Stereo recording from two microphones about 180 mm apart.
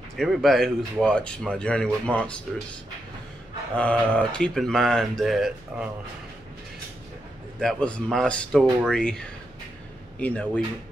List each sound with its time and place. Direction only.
0.2 s speech: centre (ahead or behind)
3.7 s speech: 5° left (ahead or behind)
7.6 s speech: 5° left (ahead or behind)
10.1 s speech: 10° left (ahead or behind)